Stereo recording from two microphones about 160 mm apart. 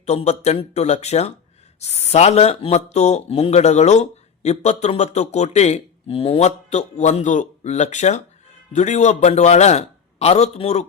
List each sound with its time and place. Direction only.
0.0 s speech: 45° left (ahead or behind)